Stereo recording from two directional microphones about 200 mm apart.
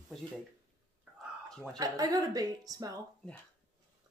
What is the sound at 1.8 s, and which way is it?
Speech, 20° right (ahead or behind).